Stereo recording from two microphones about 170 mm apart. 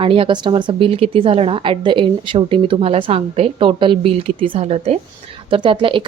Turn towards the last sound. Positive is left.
turn(degrees=-30)  # may be behind; listen again after turning